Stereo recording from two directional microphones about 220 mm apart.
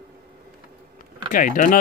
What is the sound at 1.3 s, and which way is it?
Speech, 40° left (ahead or behind).